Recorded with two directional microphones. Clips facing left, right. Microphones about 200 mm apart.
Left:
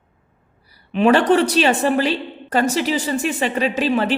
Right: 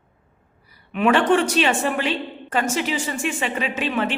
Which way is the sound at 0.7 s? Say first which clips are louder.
Left 4 dB; 30° left (ahead or behind).